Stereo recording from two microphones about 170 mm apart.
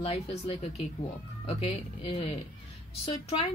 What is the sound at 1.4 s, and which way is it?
Speech, 35° left (ahead or behind).